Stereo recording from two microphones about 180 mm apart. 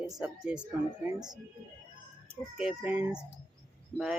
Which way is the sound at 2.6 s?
5° right (ahead or behind).